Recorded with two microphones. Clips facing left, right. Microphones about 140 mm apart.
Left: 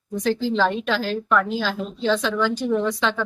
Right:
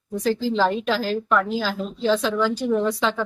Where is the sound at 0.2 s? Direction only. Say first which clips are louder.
Even; 5° right (ahead or behind).